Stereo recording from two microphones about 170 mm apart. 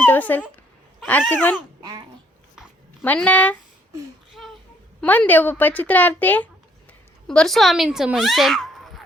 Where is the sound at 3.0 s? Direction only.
10° left (ahead or behind).